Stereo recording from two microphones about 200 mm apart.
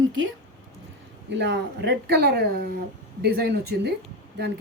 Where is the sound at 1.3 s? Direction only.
60° right (ahead or behind).